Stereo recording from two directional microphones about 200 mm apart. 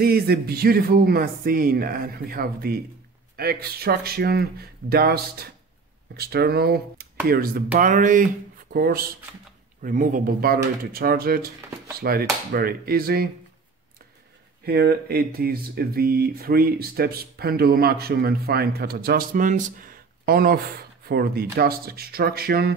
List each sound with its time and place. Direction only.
0.0 s speech: 50° right (ahead or behind)
14.6 s speech: 50° right (ahead or behind)